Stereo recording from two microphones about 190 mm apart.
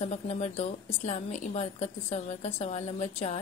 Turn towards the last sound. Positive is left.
turn(degrees=40)  # may be behind; listen again after turning